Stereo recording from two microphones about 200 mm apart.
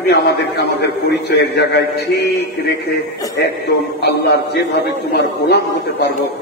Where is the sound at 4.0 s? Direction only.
55° left (ahead or behind).